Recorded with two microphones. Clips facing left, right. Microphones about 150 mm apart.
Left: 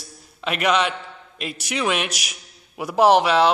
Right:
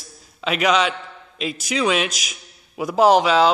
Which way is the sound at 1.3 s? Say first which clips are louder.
Right 5 dB; 70° left (ahead or behind).